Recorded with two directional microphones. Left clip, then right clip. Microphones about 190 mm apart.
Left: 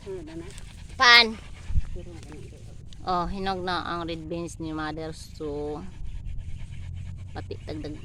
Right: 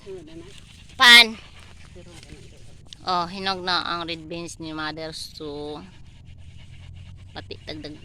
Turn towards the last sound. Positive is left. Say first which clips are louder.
# right 2 dB
turn(degrees=-5)  # may be behind; listen again after turning